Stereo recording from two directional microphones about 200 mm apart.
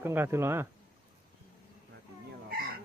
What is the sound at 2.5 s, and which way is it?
Chicken, 50° right (ahead or behind).